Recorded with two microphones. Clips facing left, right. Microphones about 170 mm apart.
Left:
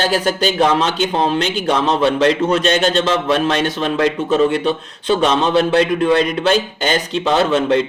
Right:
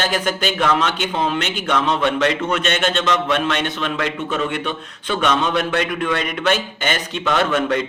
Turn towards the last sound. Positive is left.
turn(degrees=30)  # may be behind; listen again after turning